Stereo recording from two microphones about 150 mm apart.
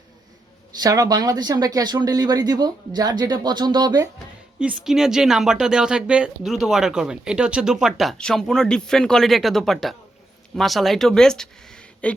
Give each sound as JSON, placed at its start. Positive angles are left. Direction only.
{"t": 0.8, "sound": "speech", "side_deg": -25}
{"t": 4.6, "sound": "speech", "side_deg": -5}